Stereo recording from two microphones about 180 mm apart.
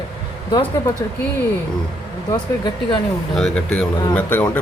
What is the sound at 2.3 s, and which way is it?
Speech, 25° left (ahead or behind).